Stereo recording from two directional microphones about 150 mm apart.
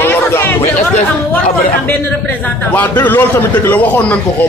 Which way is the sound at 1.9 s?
10° left (ahead or behind).